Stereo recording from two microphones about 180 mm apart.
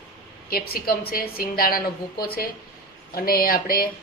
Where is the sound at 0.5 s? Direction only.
55° left (ahead or behind).